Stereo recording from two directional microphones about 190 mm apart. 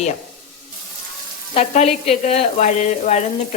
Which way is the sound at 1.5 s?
35° left (ahead or behind).